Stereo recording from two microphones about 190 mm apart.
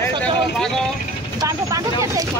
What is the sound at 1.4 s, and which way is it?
Speech, 20° right (ahead or behind).